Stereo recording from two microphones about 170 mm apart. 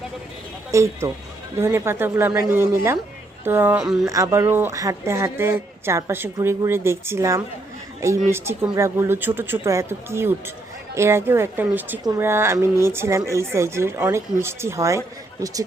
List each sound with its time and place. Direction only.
0.7 s speech: 15° right (ahead or behind)
4.0 s speech: 15° right (ahead or behind)